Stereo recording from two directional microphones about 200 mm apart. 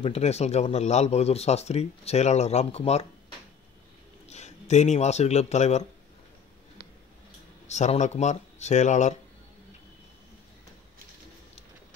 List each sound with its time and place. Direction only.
0.0 s speech: 30° left (ahead or behind)
4.3 s speech: 35° left (ahead or behind)
7.6 s speech: 35° left (ahead or behind)